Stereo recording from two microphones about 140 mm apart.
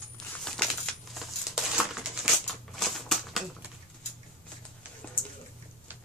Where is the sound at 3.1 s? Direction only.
Centre (ahead or behind).